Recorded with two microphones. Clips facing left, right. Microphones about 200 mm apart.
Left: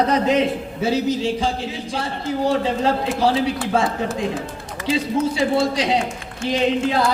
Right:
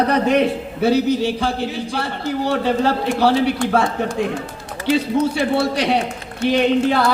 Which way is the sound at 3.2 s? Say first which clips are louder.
Right 4 dB; 70° right (ahead or behind).